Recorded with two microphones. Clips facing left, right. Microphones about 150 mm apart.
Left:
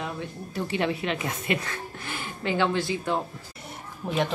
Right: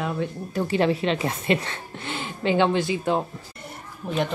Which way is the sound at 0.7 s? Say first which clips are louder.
Right 5 dB; 35° right (ahead or behind).